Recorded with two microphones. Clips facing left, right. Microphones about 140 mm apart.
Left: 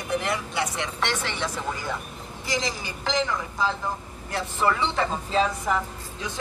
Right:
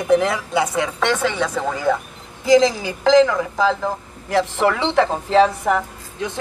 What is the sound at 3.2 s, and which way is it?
A man's voice, 90° right.